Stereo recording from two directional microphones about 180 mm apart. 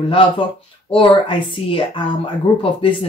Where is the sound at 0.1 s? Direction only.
30° left (ahead or behind).